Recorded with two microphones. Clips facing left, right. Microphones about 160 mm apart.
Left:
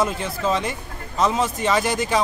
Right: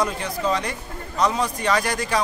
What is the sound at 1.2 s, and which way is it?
Speech, 25° left (ahead or behind).